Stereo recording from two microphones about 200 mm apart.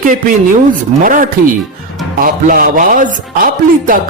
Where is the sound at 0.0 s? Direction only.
40° right (ahead or behind).